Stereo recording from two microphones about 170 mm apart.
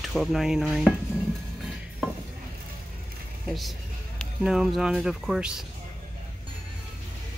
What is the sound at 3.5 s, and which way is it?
Speech, centre (ahead or behind).